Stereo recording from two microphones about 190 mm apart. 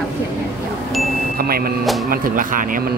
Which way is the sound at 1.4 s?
50° right (ahead or behind).